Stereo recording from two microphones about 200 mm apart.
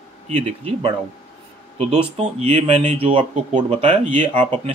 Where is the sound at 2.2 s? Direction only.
35° right (ahead or behind).